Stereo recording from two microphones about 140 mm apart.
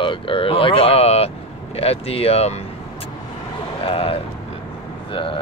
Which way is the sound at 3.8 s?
40° left (ahead or behind).